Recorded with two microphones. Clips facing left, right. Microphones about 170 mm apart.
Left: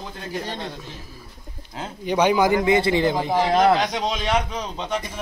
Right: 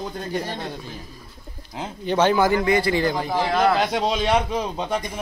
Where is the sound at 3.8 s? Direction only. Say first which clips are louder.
Right 3 dB; 30° right (ahead or behind).